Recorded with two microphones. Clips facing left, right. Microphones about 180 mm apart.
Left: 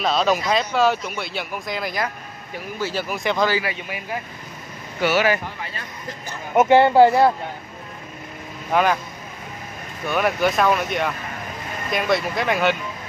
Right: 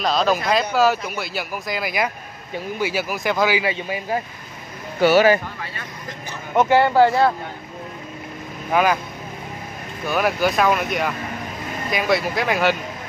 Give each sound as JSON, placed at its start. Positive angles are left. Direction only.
{"t": 0.0, "sound": "speech", "side_deg": 0}
{"t": 3.5, "sound": "a man's voice", "side_deg": -25}
{"t": 5.0, "sound": "speech", "side_deg": -35}
{"t": 6.7, "sound": "speech", "side_deg": 20}
{"t": 8.7, "sound": "speech", "side_deg": 0}
{"t": 10.0, "sound": "speech", "side_deg": -5}